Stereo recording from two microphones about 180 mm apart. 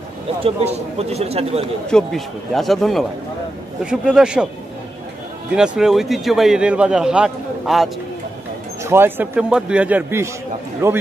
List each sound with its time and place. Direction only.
0.4 s speech: 35° right (ahead or behind)
1.9 s a man's voice: 5° left (ahead or behind)
5.6 s a man's voice: 5° right (ahead or behind)
8.8 s speech: 15° right (ahead or behind)